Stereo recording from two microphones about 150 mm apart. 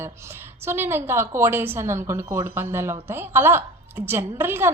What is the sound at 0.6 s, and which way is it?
Speech, 15° right (ahead or behind).